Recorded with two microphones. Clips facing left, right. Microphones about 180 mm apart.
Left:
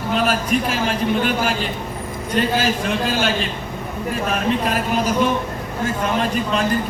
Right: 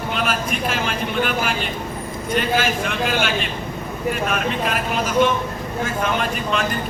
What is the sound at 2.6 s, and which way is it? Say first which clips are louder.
Speech: left 2 dB; 30° left (ahead or behind).